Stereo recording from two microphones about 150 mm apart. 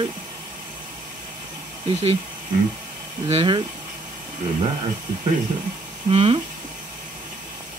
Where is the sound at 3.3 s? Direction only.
35° right (ahead or behind).